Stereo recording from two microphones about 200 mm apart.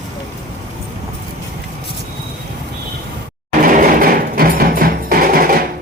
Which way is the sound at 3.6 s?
45° right (ahead or behind).